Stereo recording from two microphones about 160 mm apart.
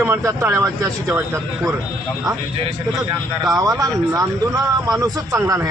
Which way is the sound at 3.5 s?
20° right (ahead or behind).